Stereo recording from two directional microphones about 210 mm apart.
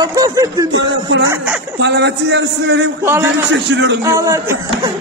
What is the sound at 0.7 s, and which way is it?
A man's voice, 60° right (ahead or behind).